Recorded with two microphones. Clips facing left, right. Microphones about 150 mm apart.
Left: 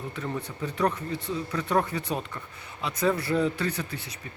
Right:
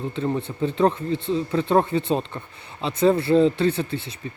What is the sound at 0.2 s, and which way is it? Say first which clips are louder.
Speech: right 9 dB; 25° right (ahead or behind).